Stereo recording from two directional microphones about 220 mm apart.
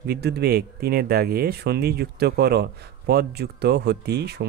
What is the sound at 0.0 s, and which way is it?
Speech, 50° right (ahead or behind).